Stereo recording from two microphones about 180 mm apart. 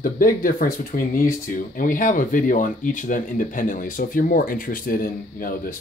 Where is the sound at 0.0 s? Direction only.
50° left (ahead or behind).